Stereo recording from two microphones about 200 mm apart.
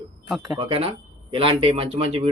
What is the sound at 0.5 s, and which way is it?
Speech, 30° right (ahead or behind).